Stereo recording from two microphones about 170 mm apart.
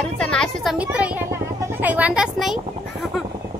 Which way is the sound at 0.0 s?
5° left (ahead or behind).